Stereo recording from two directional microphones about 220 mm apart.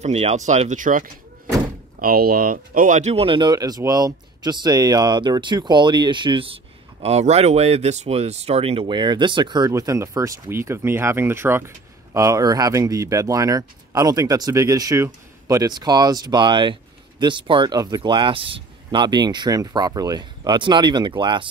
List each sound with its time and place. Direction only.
0.0 s speech: 30° right (ahead or behind)